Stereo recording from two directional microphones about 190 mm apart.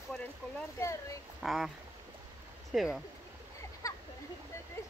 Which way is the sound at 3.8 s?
20° left (ahead or behind).